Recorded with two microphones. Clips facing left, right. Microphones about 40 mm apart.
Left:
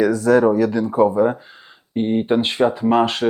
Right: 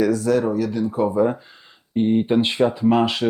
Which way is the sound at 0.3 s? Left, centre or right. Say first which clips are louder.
Left 5 dB; left.